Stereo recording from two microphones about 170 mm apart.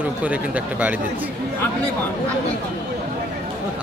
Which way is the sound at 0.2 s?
10° right (ahead or behind).